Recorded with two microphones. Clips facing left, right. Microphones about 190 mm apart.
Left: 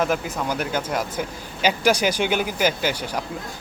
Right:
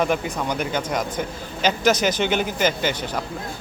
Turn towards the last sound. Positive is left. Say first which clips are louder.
# right 1 dB
turn(degrees=10)  # may be behind; listen again after turning